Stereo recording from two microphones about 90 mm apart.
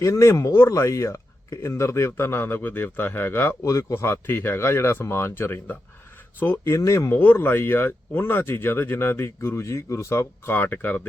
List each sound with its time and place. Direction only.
0.0 s speech: 35° left (ahead or behind)
7.2 s speech: 20° left (ahead or behind)